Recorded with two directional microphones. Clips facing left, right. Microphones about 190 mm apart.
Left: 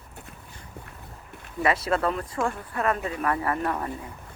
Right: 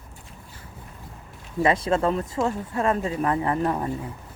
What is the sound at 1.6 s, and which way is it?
Speech, 30° right (ahead or behind).